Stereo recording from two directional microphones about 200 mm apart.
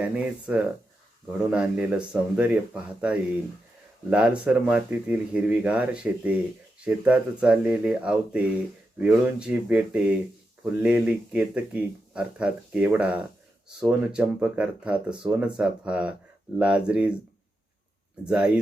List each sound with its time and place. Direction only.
0.0 s speech: 5° right (ahead or behind)
18.3 s speech: 5° right (ahead or behind)